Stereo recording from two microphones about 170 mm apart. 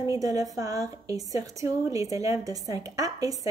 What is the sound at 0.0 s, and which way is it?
A woman's voice, 20° right (ahead or behind).